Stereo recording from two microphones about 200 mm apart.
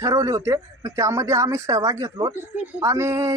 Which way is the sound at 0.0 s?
15° right (ahead or behind).